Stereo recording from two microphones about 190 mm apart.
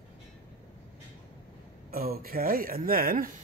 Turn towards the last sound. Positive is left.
turn(degrees=-50)  # may be behind; listen again after turning